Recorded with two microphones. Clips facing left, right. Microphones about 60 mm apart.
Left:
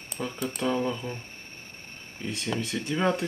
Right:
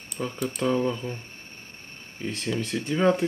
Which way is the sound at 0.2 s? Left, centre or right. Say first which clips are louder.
Right 2 dB; centre.